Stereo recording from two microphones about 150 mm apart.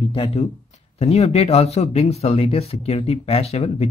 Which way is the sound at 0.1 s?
40° left (ahead or behind).